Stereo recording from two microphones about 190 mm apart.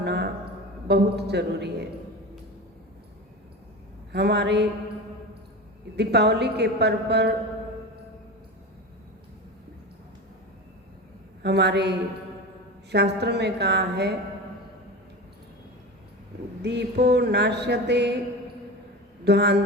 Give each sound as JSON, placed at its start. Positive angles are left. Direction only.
{"t": 0.0, "sound": "a sound", "side_deg": -60}
{"t": 0.9, "sound": "mantra", "side_deg": -60}
{"t": 4.1, "sound": "mantra", "side_deg": -60}
{"t": 6.0, "sound": "mantra", "side_deg": -60}
{"t": 11.4, "sound": "mantra", "side_deg": -60}
{"t": 16.6, "sound": "mantra", "side_deg": -60}
{"t": 19.2, "sound": "mantra", "side_deg": -60}